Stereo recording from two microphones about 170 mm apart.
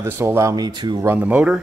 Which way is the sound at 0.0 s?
15° right (ahead or behind).